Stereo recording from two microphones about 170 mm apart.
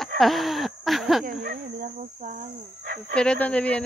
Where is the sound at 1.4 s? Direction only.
60° right (ahead or behind).